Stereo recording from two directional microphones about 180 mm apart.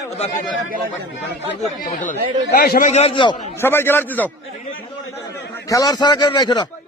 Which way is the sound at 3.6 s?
10° left (ahead or behind).